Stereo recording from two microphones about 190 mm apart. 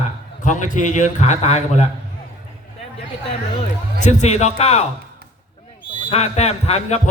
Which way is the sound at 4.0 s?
40° left (ahead or behind).